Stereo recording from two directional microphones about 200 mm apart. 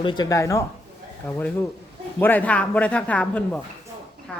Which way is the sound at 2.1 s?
10° left (ahead or behind).